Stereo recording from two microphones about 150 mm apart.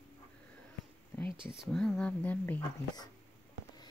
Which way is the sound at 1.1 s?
15° left (ahead or behind).